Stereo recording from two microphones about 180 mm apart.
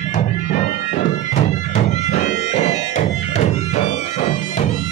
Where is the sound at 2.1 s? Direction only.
40° left (ahead or behind).